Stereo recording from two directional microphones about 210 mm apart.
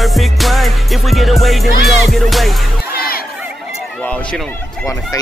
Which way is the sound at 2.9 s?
45° left (ahead or behind).